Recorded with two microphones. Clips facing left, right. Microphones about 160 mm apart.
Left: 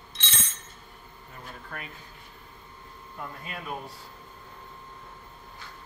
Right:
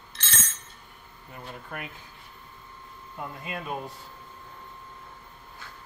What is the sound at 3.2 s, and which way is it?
Cutlery, 15° right (ahead or behind).